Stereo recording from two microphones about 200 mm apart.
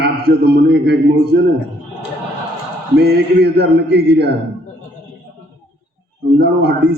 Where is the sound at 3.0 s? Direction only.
50° right (ahead or behind).